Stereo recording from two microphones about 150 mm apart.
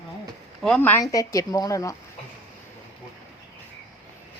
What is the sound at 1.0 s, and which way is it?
Speech, 20° left (ahead or behind).